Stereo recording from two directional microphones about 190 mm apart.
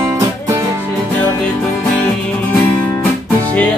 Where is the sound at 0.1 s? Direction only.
15° right (ahead or behind).